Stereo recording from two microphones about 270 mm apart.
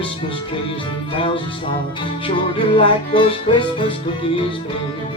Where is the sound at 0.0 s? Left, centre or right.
Centre.